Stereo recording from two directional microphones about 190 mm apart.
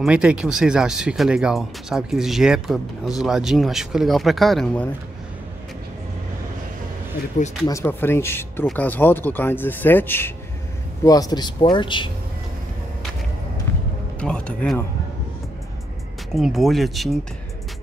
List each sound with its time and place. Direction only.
0.0 s speech: 5° right (ahead or behind)
7.6 s speech: 15° left (ahead or behind)
14.2 s speech: 5° left (ahead or behind)
16.3 s speech: centre (ahead or behind)